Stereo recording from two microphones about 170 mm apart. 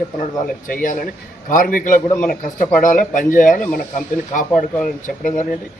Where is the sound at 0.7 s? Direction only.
50° left (ahead or behind).